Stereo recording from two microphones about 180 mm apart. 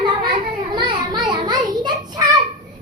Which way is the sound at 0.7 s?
25° right (ahead or behind).